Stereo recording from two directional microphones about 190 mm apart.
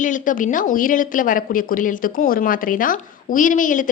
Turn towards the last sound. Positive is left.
turn(degrees=45)  # may be behind; listen again after turning